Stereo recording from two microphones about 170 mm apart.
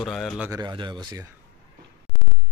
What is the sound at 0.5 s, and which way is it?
Speech, 25° right (ahead or behind).